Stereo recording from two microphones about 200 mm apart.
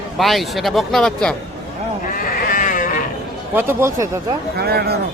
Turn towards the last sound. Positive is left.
turn(degrees=-50)  # may be behind; listen again after turning